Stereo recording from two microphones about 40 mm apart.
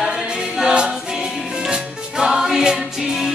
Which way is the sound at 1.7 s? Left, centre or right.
Centre.